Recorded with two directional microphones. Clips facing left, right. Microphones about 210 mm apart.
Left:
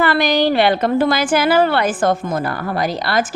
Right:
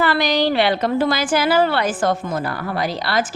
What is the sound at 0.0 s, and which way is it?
A woman's voice, 55° left (ahead or behind).